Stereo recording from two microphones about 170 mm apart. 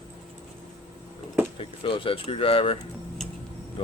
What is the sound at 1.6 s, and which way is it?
Speech, 30° left (ahead or behind).